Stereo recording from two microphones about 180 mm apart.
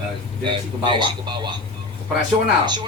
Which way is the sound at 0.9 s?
25° right (ahead or behind).